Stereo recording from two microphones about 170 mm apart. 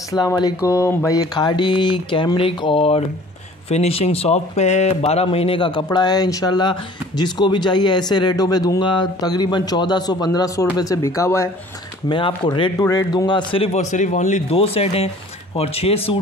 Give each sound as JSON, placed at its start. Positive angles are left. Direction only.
{"t": 0.1, "sound": "speech", "side_deg": 25}
{"t": 12.1, "sound": "a man's voice", "side_deg": 30}